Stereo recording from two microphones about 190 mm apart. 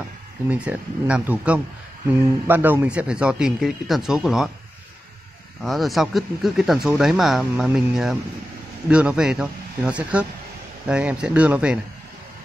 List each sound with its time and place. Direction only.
0.5 s speech: 5° right (ahead or behind)
5.6 s speech: centre (ahead or behind)